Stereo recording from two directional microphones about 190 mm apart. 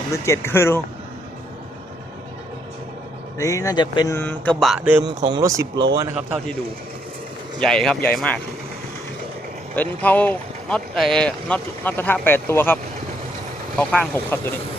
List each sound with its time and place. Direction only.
0.1 s speech: 15° left (ahead or behind)
3.3 s speech: 15° left (ahead or behind); by 4.9 s centre (ahead or behind)
5.0 s speech: 20° right (ahead or behind)
7.6 s speech: 5° left (ahead or behind)
9.7 s speech: 10° left (ahead or behind)